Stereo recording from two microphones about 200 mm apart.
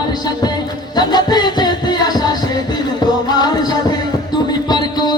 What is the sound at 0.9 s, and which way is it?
Music, 20° left (ahead or behind).